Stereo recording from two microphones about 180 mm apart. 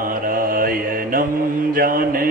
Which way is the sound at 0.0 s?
50° right (ahead or behind).